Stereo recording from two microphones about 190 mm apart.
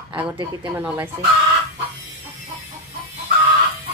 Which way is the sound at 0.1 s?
25° right (ahead or behind).